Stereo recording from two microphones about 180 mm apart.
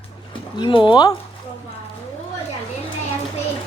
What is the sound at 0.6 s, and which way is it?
Speech, 25° left (ahead or behind).